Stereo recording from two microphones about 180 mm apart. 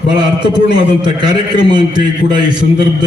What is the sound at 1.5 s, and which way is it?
Speech, 25° right (ahead or behind).